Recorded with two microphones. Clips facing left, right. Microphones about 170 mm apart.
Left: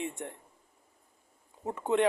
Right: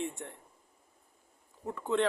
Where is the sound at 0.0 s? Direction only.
20° left (ahead or behind).